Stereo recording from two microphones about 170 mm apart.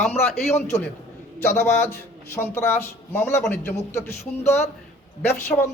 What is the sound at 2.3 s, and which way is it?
A man's voice, 15° left (ahead or behind).